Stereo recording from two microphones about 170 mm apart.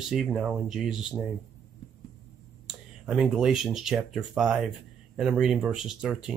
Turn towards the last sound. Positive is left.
turn(degrees=-5)  # may be behind; listen again after turning